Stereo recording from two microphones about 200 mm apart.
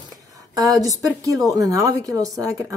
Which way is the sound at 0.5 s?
20° right (ahead or behind).